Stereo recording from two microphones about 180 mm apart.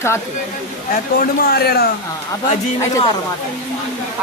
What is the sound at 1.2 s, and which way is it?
Speech, 60° left (ahead or behind).